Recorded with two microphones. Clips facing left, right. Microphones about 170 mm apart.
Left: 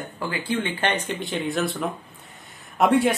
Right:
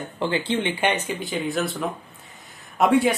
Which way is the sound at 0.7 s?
10° right (ahead or behind).